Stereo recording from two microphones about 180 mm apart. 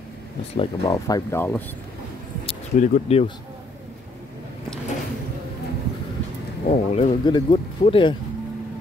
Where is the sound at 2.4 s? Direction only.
40° left (ahead or behind).